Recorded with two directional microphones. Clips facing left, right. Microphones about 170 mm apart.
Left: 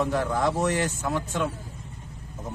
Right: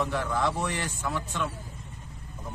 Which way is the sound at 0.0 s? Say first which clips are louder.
Left 3 dB; 45° left (ahead or behind).